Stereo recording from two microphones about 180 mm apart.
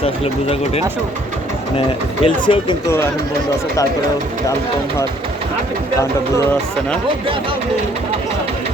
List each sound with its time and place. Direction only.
0.0 s speech: 35° left (ahead or behind)
2.2 s speech: 30° left (ahead or behind)